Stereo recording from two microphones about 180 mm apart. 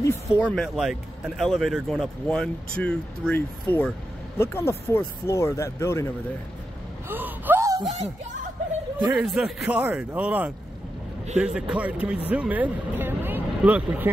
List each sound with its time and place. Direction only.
0.0 s speech: 10° left (ahead or behind)
7.1 s gasp: 10° right (ahead or behind)
9.1 s speech: 5° right (ahead or behind)